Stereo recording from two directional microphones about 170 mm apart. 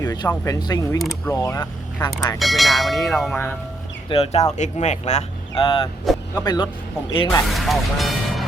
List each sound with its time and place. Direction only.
0.0 s a sound: 20° left (ahead or behind)
0.3 s speech: 20° left (ahead or behind)
0.9 s speech: centre (ahead or behind)
1.3 s speech: 20° left (ahead or behind)
2.4 s speech: centre (ahead or behind)
4.1 s speech: 35° left (ahead or behind)
5.6 s speech: 30° left (ahead or behind)
7.4 s speech: centre (ahead or behind)